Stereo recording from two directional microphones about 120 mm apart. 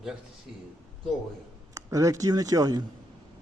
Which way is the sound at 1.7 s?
30° right (ahead or behind).